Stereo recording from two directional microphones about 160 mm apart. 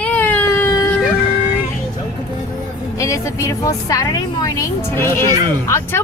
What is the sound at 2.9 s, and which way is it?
A woman's voice, 20° left (ahead or behind).